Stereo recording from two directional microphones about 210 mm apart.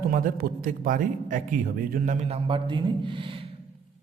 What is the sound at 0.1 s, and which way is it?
Speech, 40° right (ahead or behind).